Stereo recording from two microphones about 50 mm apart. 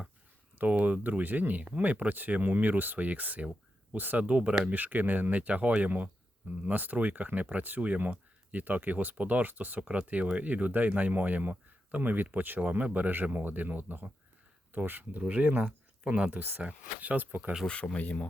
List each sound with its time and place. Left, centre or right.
0.6 s speech: right
7.8 s speech: right
16.4 s speech: right
17.9 s speech: left